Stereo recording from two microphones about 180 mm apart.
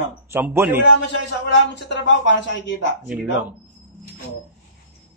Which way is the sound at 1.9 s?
85° left.